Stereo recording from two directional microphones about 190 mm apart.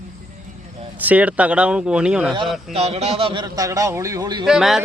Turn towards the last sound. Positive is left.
turn(degrees=-5)  # may be behind; listen again after turning